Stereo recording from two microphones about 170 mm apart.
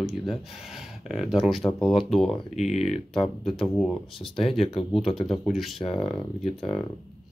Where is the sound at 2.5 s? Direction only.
40° left (ahead or behind).